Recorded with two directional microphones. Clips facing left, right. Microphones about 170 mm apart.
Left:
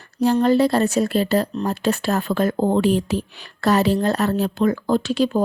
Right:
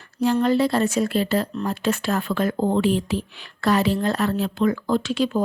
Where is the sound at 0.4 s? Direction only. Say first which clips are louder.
Left 4 dB; 40° left (ahead or behind).